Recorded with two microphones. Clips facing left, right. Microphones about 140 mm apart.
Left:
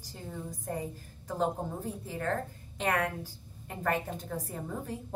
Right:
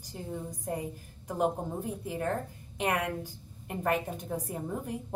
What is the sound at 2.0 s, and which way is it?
A woman's voice, 15° right (ahead or behind).